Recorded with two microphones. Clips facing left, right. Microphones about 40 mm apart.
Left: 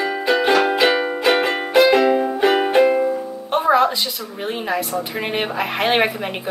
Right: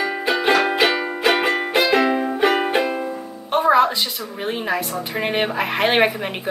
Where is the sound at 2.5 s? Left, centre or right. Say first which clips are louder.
Left 5 dB; centre.